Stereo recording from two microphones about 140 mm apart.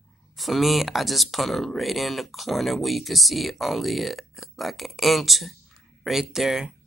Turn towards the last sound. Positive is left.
turn(degrees=-5)  # may be behind; listen again after turning